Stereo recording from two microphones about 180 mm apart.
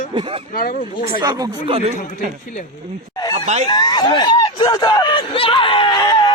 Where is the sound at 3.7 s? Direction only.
25° left (ahead or behind).